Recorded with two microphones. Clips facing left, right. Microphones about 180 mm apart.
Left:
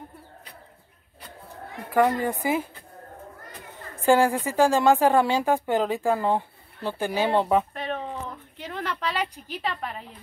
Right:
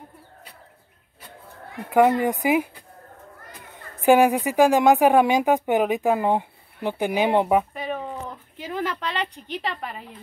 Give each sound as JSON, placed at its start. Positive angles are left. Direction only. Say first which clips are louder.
{"t": 2.0, "sound": "speech", "louder": "right 4 dB", "side_deg": -20}
{"t": 4.0, "sound": "a woman's voice", "louder": "right 3 dB", "side_deg": -15}